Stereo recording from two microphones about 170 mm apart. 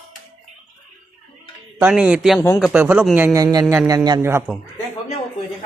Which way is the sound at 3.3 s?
20° right (ahead or behind).